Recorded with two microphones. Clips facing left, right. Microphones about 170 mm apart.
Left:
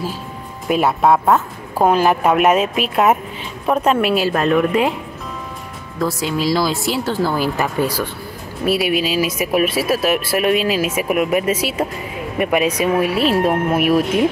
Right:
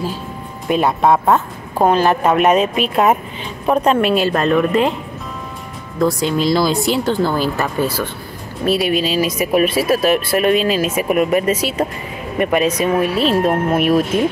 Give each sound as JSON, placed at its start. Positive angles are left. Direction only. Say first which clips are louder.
{"t": 0.7, "sound": "speech", "louder": "even", "side_deg": 5}
{"t": 5.9, "sound": "speech", "louder": "right 4 dB", "side_deg": 5}